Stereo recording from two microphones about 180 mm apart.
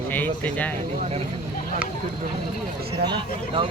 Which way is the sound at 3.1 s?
30° right (ahead or behind).